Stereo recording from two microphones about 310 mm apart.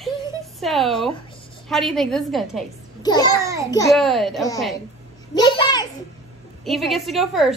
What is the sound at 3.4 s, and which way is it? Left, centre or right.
Speech, centre.